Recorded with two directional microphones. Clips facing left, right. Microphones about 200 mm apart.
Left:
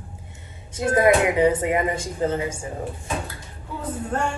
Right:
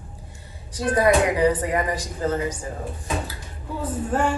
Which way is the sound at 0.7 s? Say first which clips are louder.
Left 1 dB; 25° left (ahead or behind).